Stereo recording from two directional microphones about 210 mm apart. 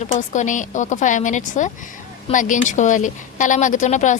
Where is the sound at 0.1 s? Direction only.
35° left (ahead or behind).